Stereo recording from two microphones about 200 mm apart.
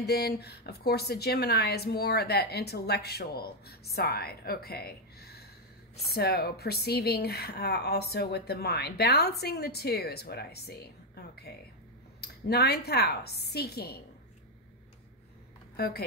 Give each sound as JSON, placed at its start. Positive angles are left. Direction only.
{"t": 0.0, "sound": "speech", "side_deg": 55}
{"t": 15.7, "sound": "speech", "side_deg": 50}